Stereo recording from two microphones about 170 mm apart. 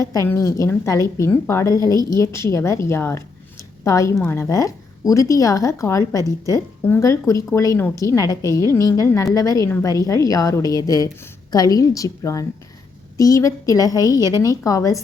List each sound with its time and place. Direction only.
0.0 s speech: 20° left (ahead or behind)